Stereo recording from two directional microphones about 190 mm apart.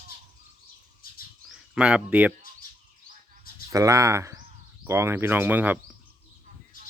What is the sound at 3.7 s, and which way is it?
Speech, 15° right (ahead or behind).